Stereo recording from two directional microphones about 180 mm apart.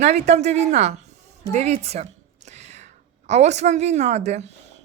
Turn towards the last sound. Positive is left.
turn(degrees=-40)  # may be behind; listen again after turning